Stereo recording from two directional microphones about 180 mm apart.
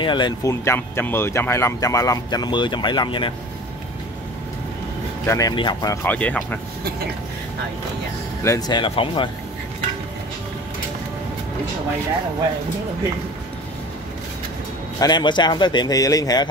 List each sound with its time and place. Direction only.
0.0 s speech: 25° left (ahead or behind)
5.2 s speech: 15° left (ahead or behind)
6.0 s speech: 10° left (ahead or behind)
8.5 s speech: 20° left (ahead or behind)
15.0 s speech: 25° left (ahead or behind)